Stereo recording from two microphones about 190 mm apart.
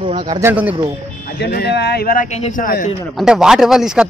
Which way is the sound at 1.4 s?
60° left (ahead or behind).